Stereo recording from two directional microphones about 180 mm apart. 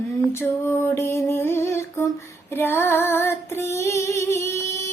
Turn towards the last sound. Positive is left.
turn(degrees=15)  # may be behind; listen again after turning